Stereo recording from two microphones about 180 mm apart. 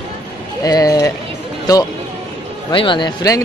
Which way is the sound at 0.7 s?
20° left (ahead or behind).